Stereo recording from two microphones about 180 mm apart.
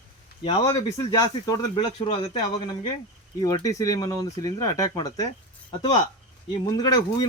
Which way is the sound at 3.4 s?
20° left (ahead or behind).